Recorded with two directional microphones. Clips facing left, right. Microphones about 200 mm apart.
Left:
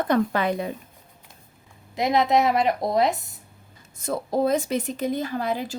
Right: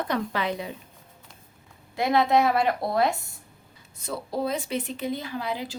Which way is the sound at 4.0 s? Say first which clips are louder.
Left 6 dB; 50° left (ahead or behind).